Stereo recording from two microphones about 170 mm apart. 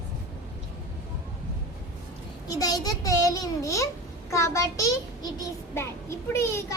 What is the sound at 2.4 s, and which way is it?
A child's voice, 20° left (ahead or behind).